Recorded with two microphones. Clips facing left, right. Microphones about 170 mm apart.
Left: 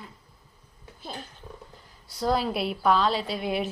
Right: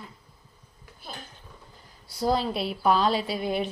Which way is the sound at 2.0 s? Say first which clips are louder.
Right 1 dB; 10° right (ahead or behind).